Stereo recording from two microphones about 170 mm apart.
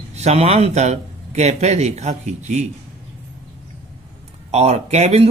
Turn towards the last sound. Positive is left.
turn(degrees=-40)  # may be behind; listen again after turning